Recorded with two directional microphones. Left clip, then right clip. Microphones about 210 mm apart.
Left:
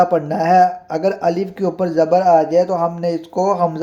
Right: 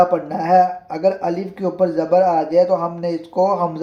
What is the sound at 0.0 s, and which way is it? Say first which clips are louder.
Speech: left 1 dB; 40° left (ahead or behind).